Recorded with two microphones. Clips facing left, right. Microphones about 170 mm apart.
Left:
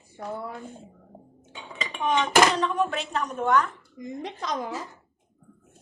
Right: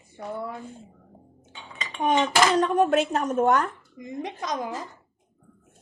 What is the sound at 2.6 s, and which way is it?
A woman's voice, 45° right (ahead or behind).